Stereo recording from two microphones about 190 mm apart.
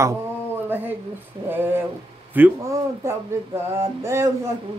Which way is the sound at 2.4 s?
10° right (ahead or behind).